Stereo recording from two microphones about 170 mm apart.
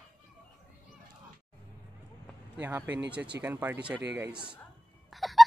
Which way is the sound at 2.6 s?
10° right (ahead or behind).